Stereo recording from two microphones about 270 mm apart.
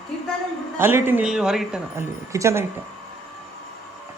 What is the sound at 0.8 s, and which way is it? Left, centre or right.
Speech, centre.